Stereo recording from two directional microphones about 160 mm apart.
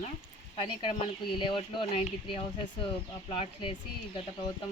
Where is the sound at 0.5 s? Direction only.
35° left (ahead or behind).